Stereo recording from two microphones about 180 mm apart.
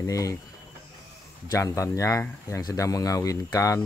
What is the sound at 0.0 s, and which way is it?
Speech, 20° left (ahead or behind).